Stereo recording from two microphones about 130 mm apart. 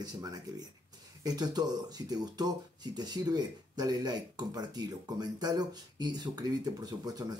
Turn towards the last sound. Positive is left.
turn(degrees=-30)  # may be behind; listen again after turning